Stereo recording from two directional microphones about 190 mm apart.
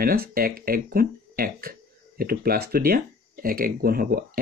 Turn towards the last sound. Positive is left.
turn(degrees=-50)  # may be behind; listen again after turning